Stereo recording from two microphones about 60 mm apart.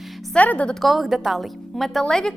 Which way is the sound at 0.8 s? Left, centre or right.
Centre.